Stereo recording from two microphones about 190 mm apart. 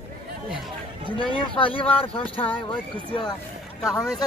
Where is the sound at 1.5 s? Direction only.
25° left (ahead or behind).